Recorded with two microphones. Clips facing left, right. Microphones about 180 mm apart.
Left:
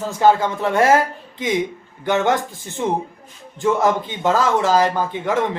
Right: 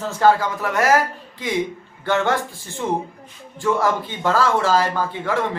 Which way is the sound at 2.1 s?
20° left (ahead or behind).